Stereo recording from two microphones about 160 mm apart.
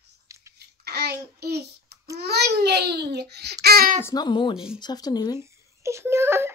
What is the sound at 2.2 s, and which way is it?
A child's voice, 90° right.